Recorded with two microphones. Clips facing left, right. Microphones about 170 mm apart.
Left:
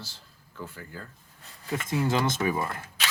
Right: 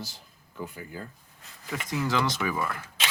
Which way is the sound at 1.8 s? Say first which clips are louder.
Left 1 dB; 25° left (ahead or behind).